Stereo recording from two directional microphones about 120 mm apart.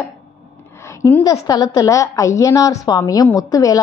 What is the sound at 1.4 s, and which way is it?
A woman's voice, 30° left (ahead or behind).